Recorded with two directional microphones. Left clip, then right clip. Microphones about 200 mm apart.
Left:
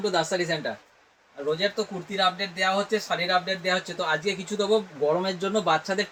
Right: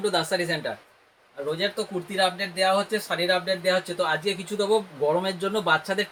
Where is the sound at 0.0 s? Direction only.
20° right (ahead or behind).